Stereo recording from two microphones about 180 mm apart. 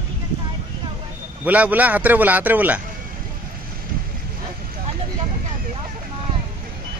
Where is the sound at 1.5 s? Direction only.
10° right (ahead or behind).